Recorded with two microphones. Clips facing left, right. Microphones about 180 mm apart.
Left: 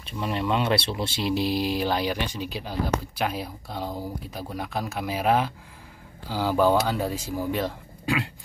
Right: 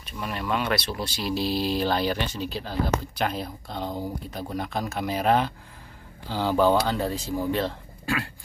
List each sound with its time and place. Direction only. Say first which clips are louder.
0.0 s speech: left 4 dB; 25° left (ahead or behind)